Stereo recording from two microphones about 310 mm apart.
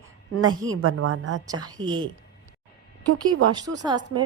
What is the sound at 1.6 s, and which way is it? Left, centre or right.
Speech, centre.